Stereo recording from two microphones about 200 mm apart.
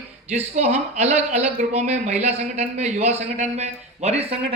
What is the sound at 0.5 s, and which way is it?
Speech, 35° right (ahead or behind).